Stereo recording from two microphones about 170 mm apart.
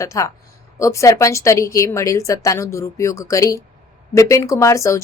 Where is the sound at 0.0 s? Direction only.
20° left (ahead or behind).